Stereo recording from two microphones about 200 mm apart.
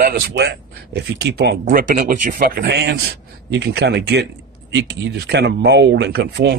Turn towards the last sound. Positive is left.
turn(degrees=-55)  # may be behind; listen again after turning